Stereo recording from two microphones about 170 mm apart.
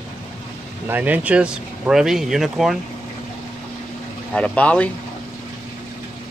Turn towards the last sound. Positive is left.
turn(degrees=10)  # may be behind; listen again after turning